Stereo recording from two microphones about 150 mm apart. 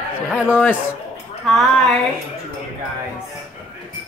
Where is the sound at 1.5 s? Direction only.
Centre (ahead or behind).